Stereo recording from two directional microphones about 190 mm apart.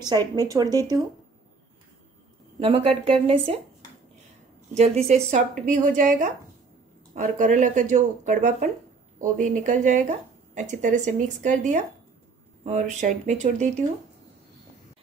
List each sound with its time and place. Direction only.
0.4 s speech: 20° right (ahead or behind)
2.6 s speech: 30° right (ahead or behind)
4.7 s a woman's voice: 35° right (ahead or behind)